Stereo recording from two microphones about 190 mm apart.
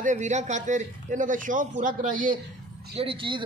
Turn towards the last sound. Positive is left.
turn(degrees=-25)  # may be behind; listen again after turning